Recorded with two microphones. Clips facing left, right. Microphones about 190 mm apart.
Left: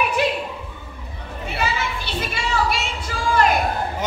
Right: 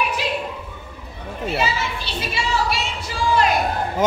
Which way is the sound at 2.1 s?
55° left (ahead or behind).